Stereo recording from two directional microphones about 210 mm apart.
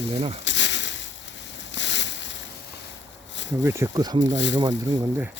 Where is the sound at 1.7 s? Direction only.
60° left (ahead or behind).